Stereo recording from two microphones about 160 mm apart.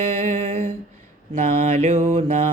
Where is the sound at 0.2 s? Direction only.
45° right (ahead or behind).